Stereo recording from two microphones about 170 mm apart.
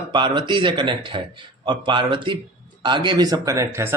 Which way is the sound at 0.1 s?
25° right (ahead or behind).